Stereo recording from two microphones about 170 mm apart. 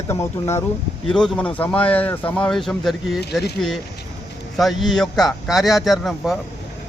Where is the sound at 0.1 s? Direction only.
15° left (ahead or behind).